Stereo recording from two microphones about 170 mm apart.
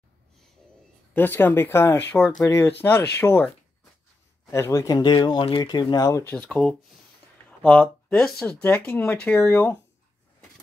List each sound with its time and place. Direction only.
1.1 s speech: 10° left (ahead or behind)
2.4 s speech: 20° left (ahead or behind)
6.3 s speech: 5° left (ahead or behind)